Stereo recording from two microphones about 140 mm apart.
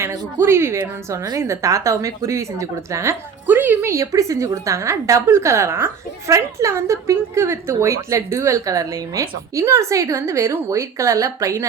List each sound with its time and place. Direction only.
0.0 s a woman's voice: 20° right (ahead or behind)